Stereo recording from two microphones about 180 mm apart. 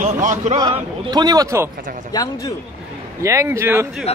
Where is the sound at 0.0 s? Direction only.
45° right (ahead or behind).